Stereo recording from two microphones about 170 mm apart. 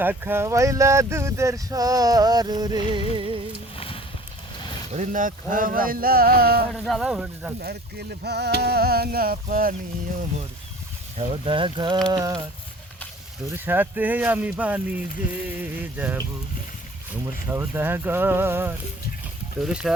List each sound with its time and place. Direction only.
0.0 s speech: 10° right (ahead or behind)
3.2 s music: 30° right (ahead or behind)
3.8 s a sound: 30° left (ahead or behind)
4.9 s speech: 45° right (ahead or behind); by 6.7 s 65° right (ahead or behind)
6.7 s speech: centre (ahead or behind)
7.6 s speech: 70° right (ahead or behind)
11.2 s speech: 30° right (ahead or behind)
13.7 s speech: 10° right (ahead or behind)